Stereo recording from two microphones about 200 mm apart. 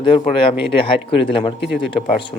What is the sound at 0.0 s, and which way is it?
Speech, 25° left (ahead or behind).